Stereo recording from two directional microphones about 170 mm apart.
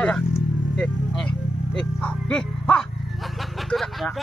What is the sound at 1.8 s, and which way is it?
Music, 5° left (ahead or behind).